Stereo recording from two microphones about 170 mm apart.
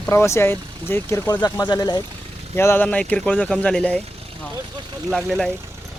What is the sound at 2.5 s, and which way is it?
Speech, 15° left (ahead or behind).